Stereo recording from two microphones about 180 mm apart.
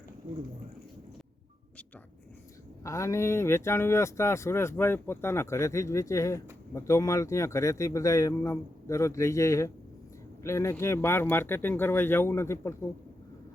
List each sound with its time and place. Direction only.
2.8 s speech: 15° left (ahead or behind)